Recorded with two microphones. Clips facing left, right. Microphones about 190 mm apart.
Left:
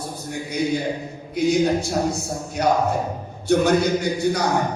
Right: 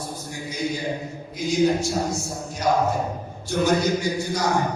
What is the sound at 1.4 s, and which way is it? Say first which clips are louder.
A man's voice: left 2 dB; 60° left (ahead or behind).